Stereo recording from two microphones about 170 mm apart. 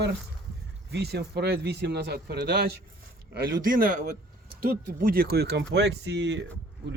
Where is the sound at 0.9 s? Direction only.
70° right (ahead or behind).